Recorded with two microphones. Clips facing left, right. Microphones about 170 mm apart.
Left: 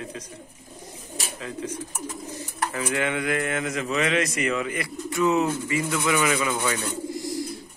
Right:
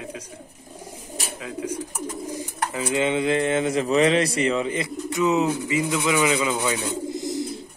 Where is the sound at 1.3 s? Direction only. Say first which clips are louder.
Right 3 dB; 10° right (ahead or behind).